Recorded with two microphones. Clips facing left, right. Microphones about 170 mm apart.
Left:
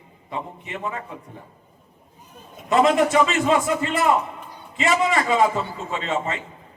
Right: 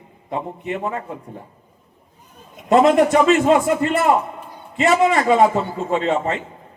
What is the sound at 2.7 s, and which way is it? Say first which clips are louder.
A man's voice: right 4 dB; 50° right (ahead or behind).